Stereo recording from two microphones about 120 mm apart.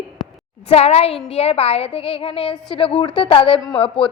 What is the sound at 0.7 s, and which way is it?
A woman's voice, 60° left (ahead or behind).